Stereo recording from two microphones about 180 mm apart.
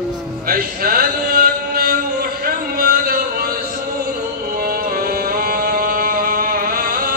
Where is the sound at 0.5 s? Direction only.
55° right (ahead or behind).